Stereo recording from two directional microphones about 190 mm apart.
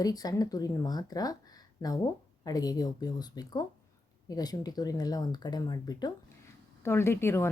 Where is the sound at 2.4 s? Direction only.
20° left (ahead or behind).